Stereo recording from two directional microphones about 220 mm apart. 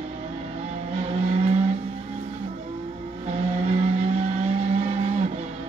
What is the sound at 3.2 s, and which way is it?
Vehicle, 30° right (ahead or behind).